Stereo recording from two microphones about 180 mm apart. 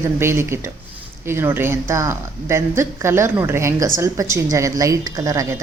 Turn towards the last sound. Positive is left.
turn(degrees=-20)  # may be behind; listen again after turning